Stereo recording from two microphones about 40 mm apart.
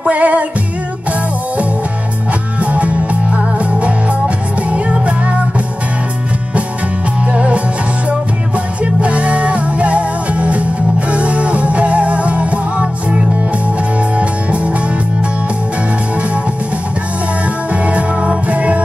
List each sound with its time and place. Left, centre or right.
0.0 s music: right
2.6 s music: right
4.6 s music: right
7.3 s music: right
8.8 s music: right
17.7 s music: right